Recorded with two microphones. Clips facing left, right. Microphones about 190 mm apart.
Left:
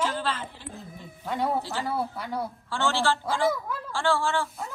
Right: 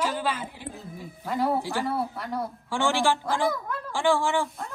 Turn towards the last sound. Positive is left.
turn(degrees=-15)  # may be behind; listen again after turning